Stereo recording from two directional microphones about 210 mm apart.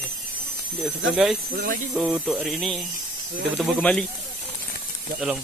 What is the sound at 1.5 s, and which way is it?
Speech, 45° right (ahead or behind).